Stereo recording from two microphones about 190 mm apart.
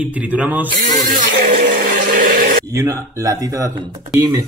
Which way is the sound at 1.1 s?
45° right (ahead or behind).